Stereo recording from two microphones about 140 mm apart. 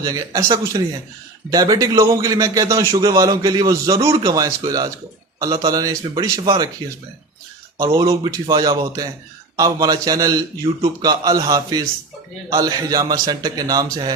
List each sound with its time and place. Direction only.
0.0 s a man's voice: 25° right (ahead or behind)
7.8 s a man's voice: 20° right (ahead or behind)